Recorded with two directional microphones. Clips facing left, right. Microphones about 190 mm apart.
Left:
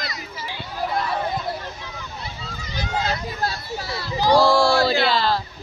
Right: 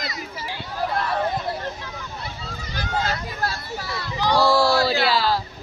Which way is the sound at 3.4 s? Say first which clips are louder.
Left 1 dB; 30° left (ahead or behind).